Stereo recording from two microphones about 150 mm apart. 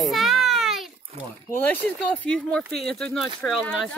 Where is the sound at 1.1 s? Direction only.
45° right (ahead or behind).